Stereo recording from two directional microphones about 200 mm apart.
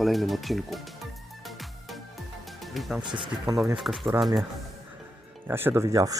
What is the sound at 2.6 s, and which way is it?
Speech, centre (ahead or behind).